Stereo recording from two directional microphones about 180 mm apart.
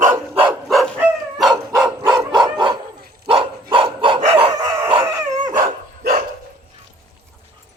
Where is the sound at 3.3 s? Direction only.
30° right (ahead or behind).